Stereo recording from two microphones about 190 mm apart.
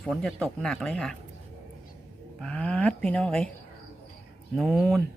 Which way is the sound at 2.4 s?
5° left (ahead or behind).